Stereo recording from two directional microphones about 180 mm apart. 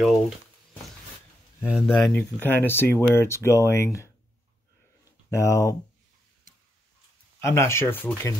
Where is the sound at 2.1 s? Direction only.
10° left (ahead or behind).